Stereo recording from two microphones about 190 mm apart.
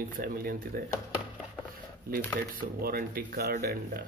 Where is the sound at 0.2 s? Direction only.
50° right (ahead or behind).